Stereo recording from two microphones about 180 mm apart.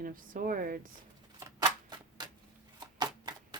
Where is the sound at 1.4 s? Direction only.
20° right (ahead or behind).